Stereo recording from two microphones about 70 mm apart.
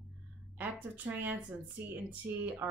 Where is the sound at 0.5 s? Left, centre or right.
Right.